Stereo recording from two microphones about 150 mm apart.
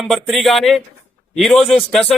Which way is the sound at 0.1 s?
Centre (ahead or behind).